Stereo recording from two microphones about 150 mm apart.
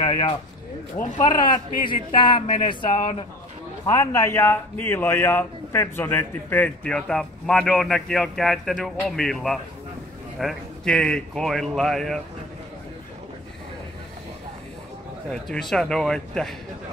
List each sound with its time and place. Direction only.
0.0 s a sound: 25° left (ahead or behind)
1.2 s speech: 30° left (ahead or behind)
3.8 s a man's voice: 20° left (ahead or behind); by 12.2 s centre (ahead or behind)
15.3 s a man's voice: 5° left (ahead or behind)